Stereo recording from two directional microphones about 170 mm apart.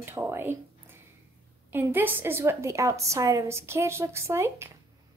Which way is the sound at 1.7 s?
10° right (ahead or behind).